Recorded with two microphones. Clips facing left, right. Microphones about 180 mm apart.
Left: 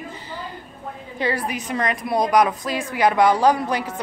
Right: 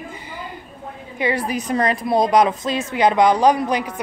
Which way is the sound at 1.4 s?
35° right (ahead or behind).